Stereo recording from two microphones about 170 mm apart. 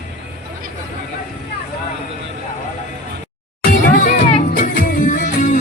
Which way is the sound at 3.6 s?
55° left (ahead or behind).